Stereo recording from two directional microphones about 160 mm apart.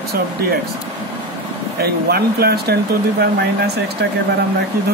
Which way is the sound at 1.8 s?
75° right (ahead or behind).